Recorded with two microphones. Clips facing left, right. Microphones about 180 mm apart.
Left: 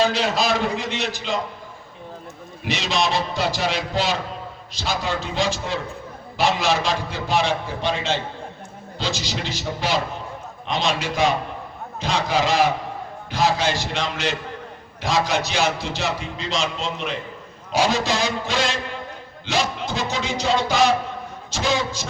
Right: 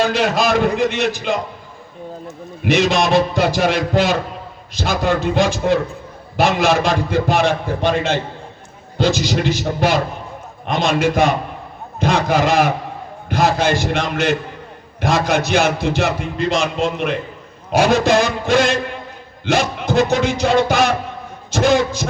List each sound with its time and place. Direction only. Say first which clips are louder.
0.0 s music: right 4 dB; 50° right (ahead or behind)
2.6 s music: right 8 dB; 55° right (ahead or behind)